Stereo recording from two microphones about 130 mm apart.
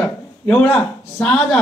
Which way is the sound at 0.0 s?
10° left (ahead or behind).